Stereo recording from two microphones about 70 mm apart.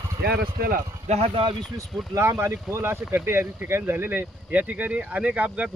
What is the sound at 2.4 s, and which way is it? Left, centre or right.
Speech, right.